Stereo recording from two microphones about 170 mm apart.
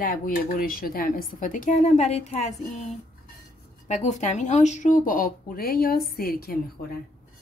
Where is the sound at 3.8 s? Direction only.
45° left (ahead or behind); by 7.0 s 65° left (ahead or behind).